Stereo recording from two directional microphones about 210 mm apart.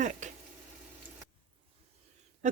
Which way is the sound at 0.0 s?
35° right (ahead or behind).